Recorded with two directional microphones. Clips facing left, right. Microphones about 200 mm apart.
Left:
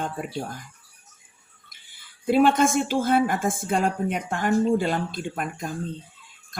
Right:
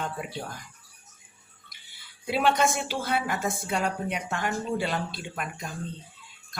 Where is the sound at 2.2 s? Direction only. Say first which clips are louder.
Left 6 dB; 50° left (ahead or behind).